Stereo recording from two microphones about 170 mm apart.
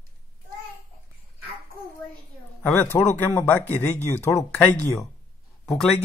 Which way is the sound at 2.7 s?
15° left (ahead or behind).